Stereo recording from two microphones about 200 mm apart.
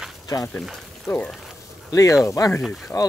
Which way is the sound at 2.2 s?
15° left (ahead or behind).